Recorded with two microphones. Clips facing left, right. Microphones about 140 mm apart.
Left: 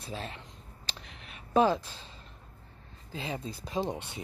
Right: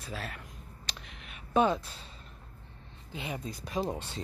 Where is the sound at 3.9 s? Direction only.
15° left (ahead or behind).